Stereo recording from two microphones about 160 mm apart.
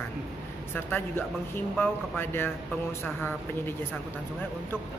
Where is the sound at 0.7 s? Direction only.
10° left (ahead or behind).